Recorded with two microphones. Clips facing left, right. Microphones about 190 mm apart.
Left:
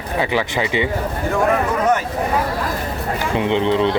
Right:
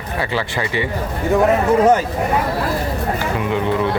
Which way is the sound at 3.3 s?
25° left (ahead or behind).